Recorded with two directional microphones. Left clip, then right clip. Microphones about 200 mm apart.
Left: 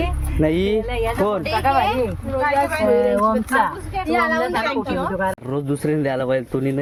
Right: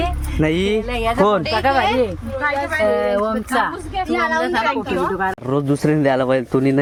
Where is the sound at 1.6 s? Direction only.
45° right (ahead or behind).